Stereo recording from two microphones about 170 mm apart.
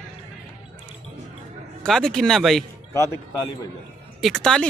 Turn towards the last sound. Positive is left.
turn(degrees=5)  # may be behind; listen again after turning